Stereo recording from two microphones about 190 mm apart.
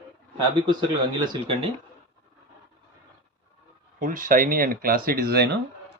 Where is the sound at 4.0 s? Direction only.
45° right (ahead or behind).